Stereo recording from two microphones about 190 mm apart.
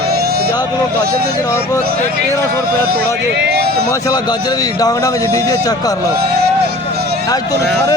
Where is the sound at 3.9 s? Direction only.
20° left (ahead or behind).